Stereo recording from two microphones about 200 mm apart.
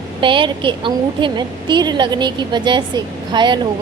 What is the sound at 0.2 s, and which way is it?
A woman's voice, 25° right (ahead or behind).